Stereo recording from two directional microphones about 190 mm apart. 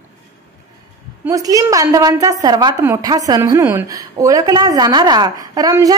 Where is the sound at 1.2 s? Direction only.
20° right (ahead or behind).